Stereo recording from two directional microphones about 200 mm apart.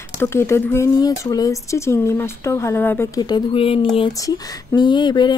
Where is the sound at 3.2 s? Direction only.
20° left (ahead or behind).